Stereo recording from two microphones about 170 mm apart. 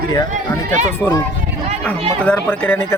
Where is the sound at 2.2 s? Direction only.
10° left (ahead or behind).